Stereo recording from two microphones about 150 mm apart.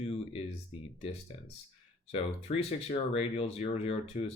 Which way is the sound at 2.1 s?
40° left (ahead or behind).